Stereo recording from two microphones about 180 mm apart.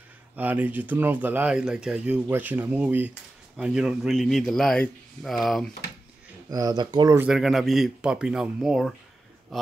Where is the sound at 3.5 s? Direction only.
5° right (ahead or behind).